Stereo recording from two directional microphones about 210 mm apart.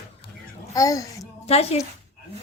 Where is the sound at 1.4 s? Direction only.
30° left (ahead or behind).